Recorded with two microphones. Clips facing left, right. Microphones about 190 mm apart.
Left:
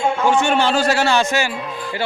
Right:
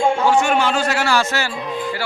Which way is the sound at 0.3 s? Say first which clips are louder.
Even; 25° left (ahead or behind).